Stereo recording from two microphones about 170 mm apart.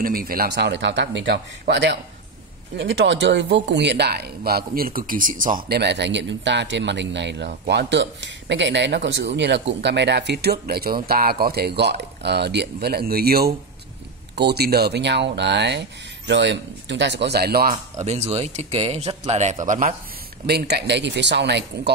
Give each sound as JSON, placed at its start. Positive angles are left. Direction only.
{"t": 0.0, "sound": "a man's voice", "side_deg": -60}
{"t": 5.7, "sound": "speech", "side_deg": -85}
{"t": 17.9, "sound": "speech", "side_deg": -40}
{"t": 20.4, "sound": "speech", "side_deg": -70}